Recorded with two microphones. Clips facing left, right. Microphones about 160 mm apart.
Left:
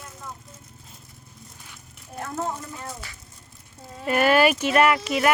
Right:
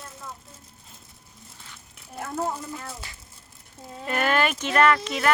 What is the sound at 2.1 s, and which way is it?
Speech, 5° right (ahead or behind).